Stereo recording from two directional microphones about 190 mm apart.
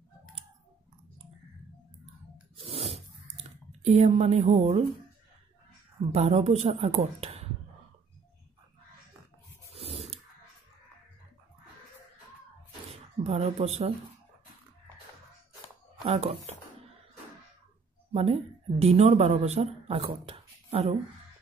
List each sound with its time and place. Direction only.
2.5 s a sound: 30° right (ahead or behind)
5.9 s speech: 30° right (ahead or behind)
9.8 s spray: 35° right (ahead or behind)
13.2 s speech: 30° right (ahead or behind)
16.0 s speech: 30° right (ahead or behind)
18.1 s speech: 30° right (ahead or behind)